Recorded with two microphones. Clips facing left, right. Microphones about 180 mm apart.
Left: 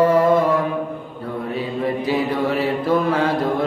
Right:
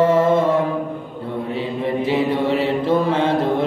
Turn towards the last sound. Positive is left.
turn(degrees=-25)  # may be behind; listen again after turning